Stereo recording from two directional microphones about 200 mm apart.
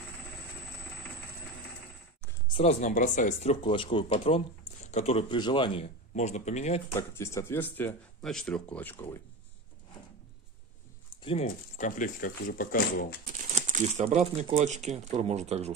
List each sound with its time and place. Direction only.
2.5 s speech: 30° left (ahead or behind)
7.0 s speech: 15° left (ahead or behind)
11.4 s speech: 40° left (ahead or behind)
13.4 s speech: 35° right (ahead or behind)